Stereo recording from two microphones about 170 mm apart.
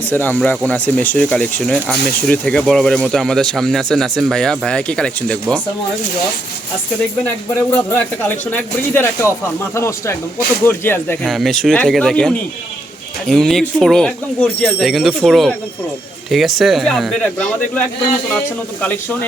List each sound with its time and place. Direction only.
0.1 s speech: 10° left (ahead or behind)
7.7 s speech: 10° left (ahead or behind)
11.3 s speech: centre (ahead or behind)